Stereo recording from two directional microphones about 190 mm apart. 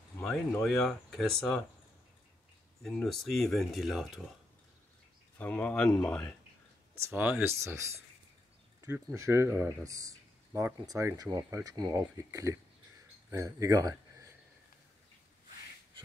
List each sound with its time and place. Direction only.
0.2 s speech: 5° left (ahead or behind)
2.8 s speech: centre (ahead or behind)
5.4 s speech: 10° left (ahead or behind)
7.0 s speech: 10° right (ahead or behind)